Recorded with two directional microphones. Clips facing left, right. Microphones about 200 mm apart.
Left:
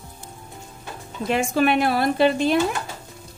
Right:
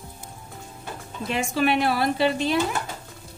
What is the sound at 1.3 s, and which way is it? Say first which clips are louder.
A woman's voice: left 3 dB; 50° left (ahead or behind).